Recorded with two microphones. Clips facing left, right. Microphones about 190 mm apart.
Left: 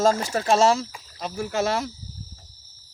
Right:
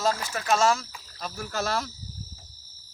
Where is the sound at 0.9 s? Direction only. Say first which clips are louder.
Left 4 dB; 15° left (ahead or behind).